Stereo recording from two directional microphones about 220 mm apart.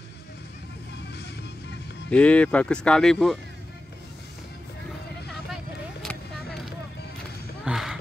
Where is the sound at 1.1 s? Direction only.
50° left (ahead or behind).